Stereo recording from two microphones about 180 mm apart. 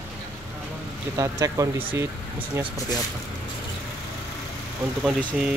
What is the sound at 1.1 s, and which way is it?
Speech, 15° right (ahead or behind).